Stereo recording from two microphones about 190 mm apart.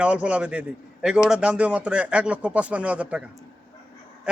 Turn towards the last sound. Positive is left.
turn(degrees=-5)  # may be behind; listen again after turning